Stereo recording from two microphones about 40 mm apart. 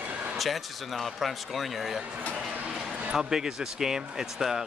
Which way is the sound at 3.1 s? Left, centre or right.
Centre.